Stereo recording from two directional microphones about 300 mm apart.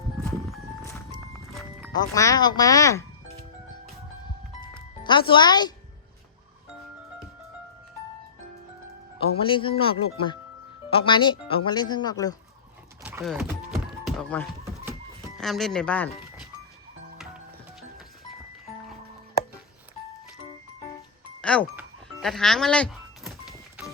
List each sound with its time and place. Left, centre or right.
0.2 s a sound: centre
1.9 s speech: centre
4.6 s music: centre
9.2 s speech: centre
13.0 s horse: centre
13.7 s music: centre
15.4 s speech: centre
21.4 s speech: centre
21.8 s music: centre